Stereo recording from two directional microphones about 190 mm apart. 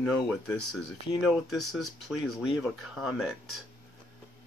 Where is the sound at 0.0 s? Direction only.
Centre (ahead or behind).